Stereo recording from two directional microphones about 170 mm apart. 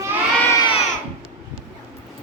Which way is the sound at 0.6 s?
30° left (ahead or behind).